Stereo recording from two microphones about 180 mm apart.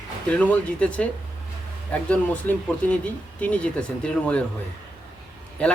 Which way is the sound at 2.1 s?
5° left (ahead or behind).